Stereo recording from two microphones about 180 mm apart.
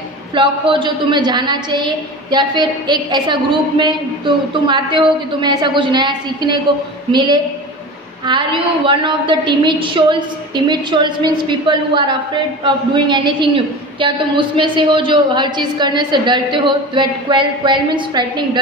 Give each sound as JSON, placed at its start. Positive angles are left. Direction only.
{"t": 0.3, "sound": "a woman's voice", "side_deg": -25}